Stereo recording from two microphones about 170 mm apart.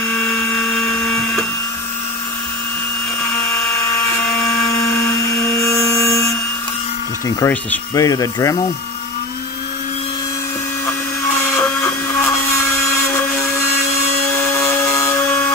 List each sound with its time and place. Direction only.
5.6 s a sound: 15° left (ahead or behind)
7.2 s speech: 15° left (ahead or behind)
14.5 s sawing: 15° left (ahead or behind)